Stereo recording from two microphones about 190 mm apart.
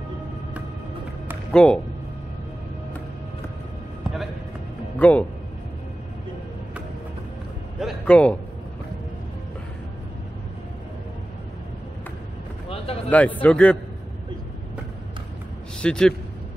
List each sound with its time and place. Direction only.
1.5 s speech: 5° left (ahead or behind)
4.9 s speech: 5° left (ahead or behind)
7.8 s a man's voice: 5° left (ahead or behind)
12.6 s vehicle: 30° left (ahead or behind)
13.1 s speech: 10° left (ahead or behind)
15.8 s a man's voice: 5° left (ahead or behind)